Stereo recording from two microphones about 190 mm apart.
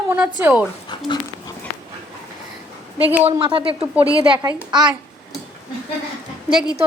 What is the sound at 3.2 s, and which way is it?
A woman's voice, 30° right (ahead or behind).